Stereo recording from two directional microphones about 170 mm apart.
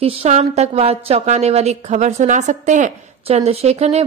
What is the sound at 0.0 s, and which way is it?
A woman's voice, 35° right (ahead or behind).